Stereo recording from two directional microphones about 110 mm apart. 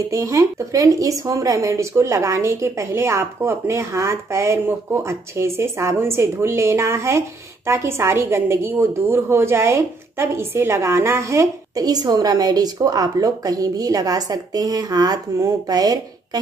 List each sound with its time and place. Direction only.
0.1 s a woman's voice: 30° right (ahead or behind)